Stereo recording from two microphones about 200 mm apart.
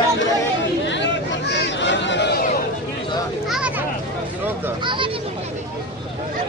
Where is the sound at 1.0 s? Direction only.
60° left (ahead or behind).